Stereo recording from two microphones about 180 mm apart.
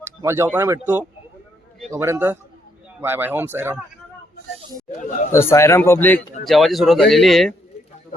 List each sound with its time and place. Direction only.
0.2 s speech: 15° right (ahead or behind)
4.9 s chatter: 45° left (ahead or behind)
5.3 s speech: 15° left (ahead or behind)